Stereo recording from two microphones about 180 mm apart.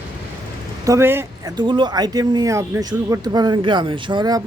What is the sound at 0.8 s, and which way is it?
Speech, 15° right (ahead or behind).